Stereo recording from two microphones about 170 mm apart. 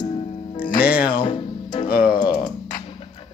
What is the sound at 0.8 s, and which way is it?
Speech, 60° left (ahead or behind).